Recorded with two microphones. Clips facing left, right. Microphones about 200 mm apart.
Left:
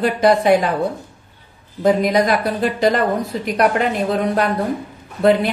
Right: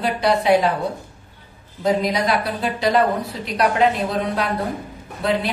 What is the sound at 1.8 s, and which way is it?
Speech, 50° left (ahead or behind).